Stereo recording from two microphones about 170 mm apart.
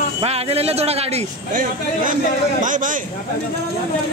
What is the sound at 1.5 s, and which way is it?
Speech, 50° right (ahead or behind).